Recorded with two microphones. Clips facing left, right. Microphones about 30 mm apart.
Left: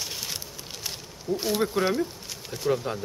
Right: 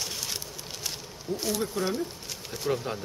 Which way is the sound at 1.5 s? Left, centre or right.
Left.